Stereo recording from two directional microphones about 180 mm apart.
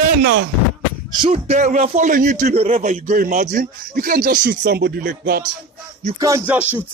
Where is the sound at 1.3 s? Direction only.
40° right (ahead or behind); by 5.4 s 60° right (ahead or behind).